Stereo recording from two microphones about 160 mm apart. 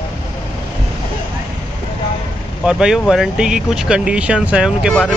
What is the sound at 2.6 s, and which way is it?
Speech, 5° right (ahead or behind).